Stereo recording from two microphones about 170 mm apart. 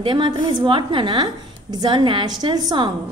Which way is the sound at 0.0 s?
30° right (ahead or behind).